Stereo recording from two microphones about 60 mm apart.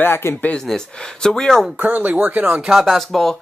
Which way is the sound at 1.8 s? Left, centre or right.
Right.